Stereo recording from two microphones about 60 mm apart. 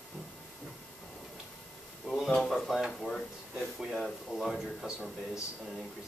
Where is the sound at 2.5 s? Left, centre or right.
Centre.